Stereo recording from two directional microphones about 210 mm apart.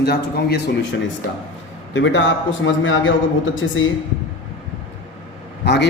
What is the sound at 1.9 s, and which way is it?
A man's voice, 60° left (ahead or behind).